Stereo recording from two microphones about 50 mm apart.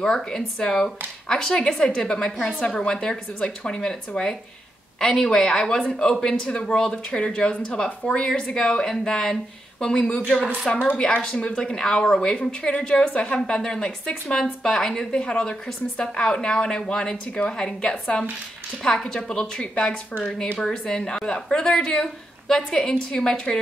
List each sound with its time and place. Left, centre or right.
0.0 s speech: centre